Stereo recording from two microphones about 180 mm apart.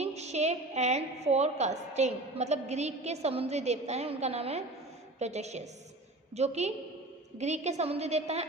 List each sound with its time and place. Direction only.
0.0 s a woman's voice: 35° right (ahead or behind)